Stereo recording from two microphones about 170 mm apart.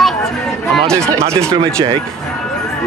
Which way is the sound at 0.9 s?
15° right (ahead or behind).